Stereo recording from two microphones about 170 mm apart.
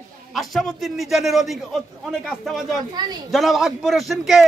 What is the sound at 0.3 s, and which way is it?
A man's voice, centre (ahead or behind).